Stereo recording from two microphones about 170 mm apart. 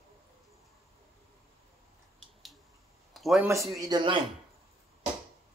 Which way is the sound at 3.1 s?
Centre (ahead or behind).